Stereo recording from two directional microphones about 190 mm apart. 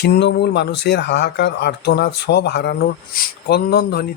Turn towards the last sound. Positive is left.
turn(degrees=55)  # may be behind; listen again after turning